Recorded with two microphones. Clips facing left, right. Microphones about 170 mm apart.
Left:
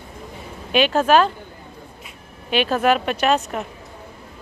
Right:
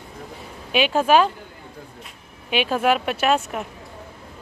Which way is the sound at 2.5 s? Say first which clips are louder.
Left 2 dB; 10° right (ahead or behind).